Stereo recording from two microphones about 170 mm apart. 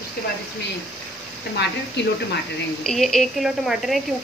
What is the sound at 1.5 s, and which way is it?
Speech, 90° left.